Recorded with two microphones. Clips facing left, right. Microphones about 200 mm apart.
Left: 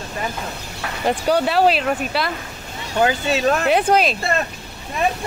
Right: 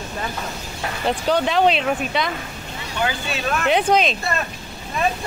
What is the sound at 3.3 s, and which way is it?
Speech, 35° left (ahead or behind).